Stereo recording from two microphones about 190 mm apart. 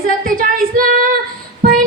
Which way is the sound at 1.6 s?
50° right (ahead or behind).